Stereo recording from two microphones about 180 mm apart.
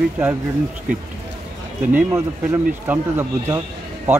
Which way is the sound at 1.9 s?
15° right (ahead or behind).